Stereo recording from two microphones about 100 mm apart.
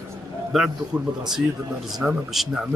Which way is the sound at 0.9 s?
40° right (ahead or behind).